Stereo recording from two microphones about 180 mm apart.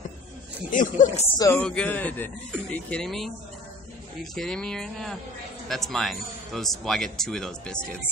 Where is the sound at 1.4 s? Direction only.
10° left (ahead or behind).